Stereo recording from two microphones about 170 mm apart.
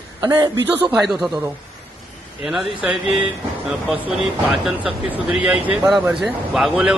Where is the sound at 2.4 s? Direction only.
Centre (ahead or behind).